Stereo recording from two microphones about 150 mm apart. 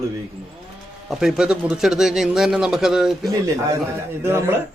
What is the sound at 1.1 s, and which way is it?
A man's voice, 5° right (ahead or behind).